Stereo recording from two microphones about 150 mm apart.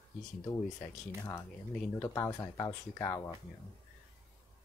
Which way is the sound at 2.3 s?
20° left (ahead or behind).